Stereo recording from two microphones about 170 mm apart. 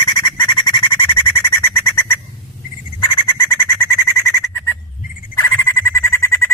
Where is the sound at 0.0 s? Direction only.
25° left (ahead or behind).